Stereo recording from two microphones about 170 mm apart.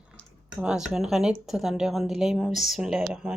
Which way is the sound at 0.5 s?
5° right (ahead or behind).